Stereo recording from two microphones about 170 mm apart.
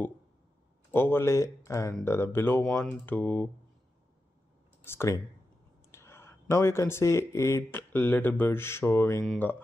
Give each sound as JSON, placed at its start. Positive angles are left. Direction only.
{"t": 0.9, "sound": "speech", "side_deg": 10}
{"t": 4.8, "sound": "speech", "side_deg": 15}
{"t": 5.9, "sound": "whispering", "side_deg": 15}
{"t": 6.5, "sound": "speech", "side_deg": 15}
{"t": 9.2, "sound": "speech", "side_deg": 0}